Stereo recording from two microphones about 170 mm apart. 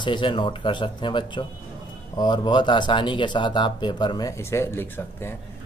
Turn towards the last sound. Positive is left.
turn(degrees=15)  # may be behind; listen again after turning